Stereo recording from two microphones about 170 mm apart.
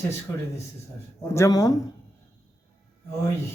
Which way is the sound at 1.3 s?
20° left (ahead or behind).